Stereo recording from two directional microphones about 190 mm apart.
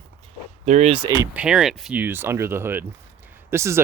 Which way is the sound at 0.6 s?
40° right (ahead or behind).